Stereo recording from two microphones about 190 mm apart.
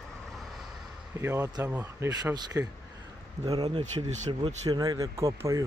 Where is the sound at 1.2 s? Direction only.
15° right (ahead or behind).